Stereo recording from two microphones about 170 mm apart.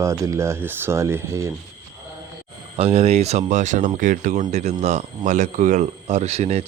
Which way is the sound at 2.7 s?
35° right (ahead or behind).